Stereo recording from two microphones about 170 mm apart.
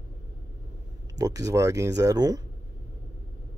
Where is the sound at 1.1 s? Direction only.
20° right (ahead or behind).